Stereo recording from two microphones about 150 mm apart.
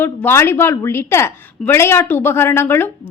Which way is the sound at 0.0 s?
15° left (ahead or behind).